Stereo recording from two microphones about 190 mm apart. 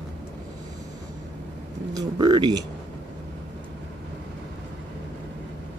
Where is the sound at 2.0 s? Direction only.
20° right (ahead or behind).